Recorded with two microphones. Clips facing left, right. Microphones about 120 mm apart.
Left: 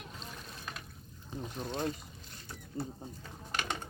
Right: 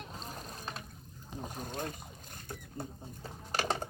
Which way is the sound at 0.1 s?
40° right (ahead or behind).